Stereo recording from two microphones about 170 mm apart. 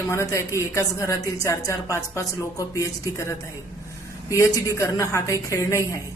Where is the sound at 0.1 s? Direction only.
15° left (ahead or behind).